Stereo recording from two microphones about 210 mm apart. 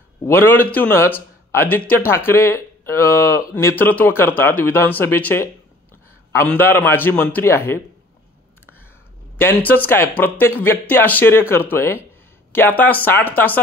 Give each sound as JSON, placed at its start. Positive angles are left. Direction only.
{"t": 0.2, "sound": "a man's voice", "side_deg": 10}
{"t": 9.4, "sound": "a man's voice", "side_deg": 10}